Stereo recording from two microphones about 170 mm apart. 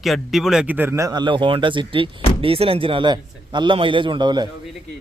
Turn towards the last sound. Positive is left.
turn(degrees=-25)  # may be behind; listen again after turning